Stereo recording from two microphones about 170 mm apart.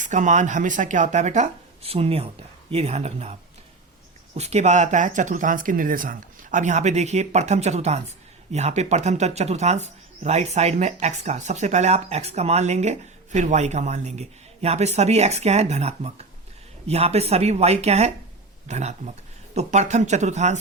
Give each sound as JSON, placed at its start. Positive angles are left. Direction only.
{"t": 0.0, "sound": "speech", "side_deg": -45}
{"t": 4.4, "sound": "speech", "side_deg": -40}